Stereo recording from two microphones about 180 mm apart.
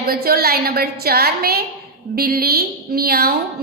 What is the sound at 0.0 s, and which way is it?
A woman's voice, 55° right (ahead or behind).